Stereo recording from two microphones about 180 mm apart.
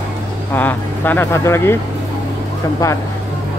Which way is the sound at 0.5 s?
10° left (ahead or behind).